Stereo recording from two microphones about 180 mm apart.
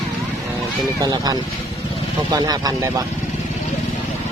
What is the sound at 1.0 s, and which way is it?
Speech, 20° right (ahead or behind).